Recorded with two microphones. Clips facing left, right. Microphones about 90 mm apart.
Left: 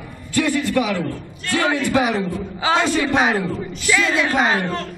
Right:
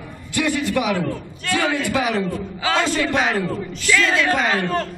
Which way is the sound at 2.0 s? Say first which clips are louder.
Left 1 dB; 10° left (ahead or behind).